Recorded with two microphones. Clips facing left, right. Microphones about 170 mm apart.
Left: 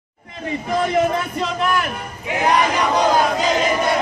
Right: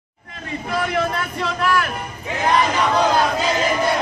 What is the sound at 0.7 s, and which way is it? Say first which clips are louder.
Speech: left 4 dB; 15° left (ahead or behind).